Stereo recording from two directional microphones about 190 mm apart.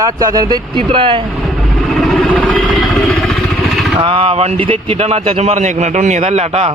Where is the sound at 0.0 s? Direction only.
20° right (ahead or behind).